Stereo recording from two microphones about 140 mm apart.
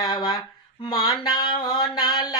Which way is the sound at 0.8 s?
30° left (ahead or behind).